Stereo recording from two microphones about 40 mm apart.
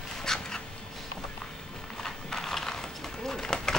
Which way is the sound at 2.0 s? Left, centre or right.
Centre.